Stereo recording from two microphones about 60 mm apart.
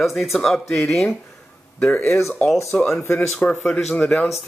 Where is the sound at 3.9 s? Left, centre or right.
Left.